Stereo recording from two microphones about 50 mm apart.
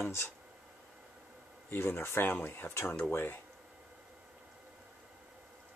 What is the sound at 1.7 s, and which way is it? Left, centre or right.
Speech, left.